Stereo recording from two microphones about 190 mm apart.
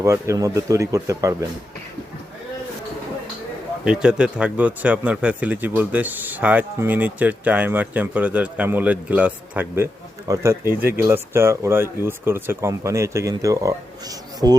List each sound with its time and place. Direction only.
0.0 s speech: 15° right (ahead or behind)
3.8 s speech: 5° right (ahead or behind); by 14.6 s 20° right (ahead or behind)